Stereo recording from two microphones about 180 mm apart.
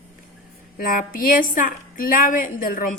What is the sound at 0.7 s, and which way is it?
A woman's voice, 50° left (ahead or behind).